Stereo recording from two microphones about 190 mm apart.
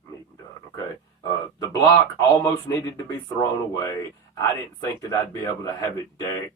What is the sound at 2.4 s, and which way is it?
Speech, 20° left (ahead or behind).